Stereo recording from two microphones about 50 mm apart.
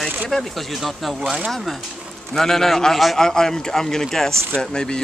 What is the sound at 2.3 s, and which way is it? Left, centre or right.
Speech, centre.